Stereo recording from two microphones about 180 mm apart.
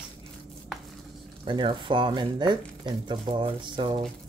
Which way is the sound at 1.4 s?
25° right (ahead or behind).